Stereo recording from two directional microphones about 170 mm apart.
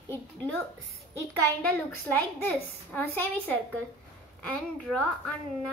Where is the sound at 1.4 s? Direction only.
10° left (ahead or behind).